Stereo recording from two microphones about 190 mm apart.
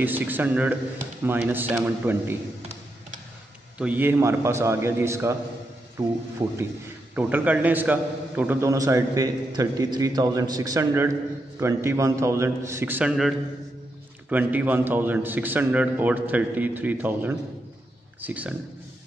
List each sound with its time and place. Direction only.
0.0 s a man's voice: 10° right (ahead or behind)
3.7 s a man's voice: 5° right (ahead or behind)
14.3 s a man's voice: 10° right (ahead or behind)